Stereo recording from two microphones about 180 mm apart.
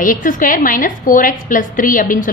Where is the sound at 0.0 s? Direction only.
50° left (ahead or behind).